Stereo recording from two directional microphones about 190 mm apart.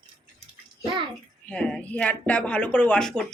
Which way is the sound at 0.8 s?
25° right (ahead or behind).